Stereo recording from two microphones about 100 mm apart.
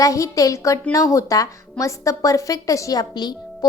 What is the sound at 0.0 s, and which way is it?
Speech, 35° left (ahead or behind).